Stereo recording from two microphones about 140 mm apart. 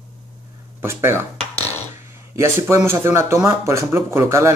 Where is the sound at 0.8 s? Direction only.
15° right (ahead or behind).